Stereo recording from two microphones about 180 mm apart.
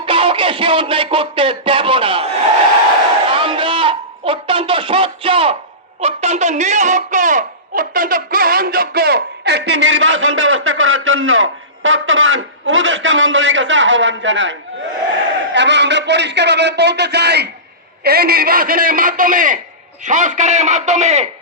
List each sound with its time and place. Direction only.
0.0 s speech: 30° right (ahead or behind)
3.3 s a sound: 30° right (ahead or behind)
6.0 s speech: 35° right (ahead or behind); by 14.5 s 90° right
15.5 s a man's voice: 75° right (ahead or behind); by 21.2 s 40° right (ahead or behind)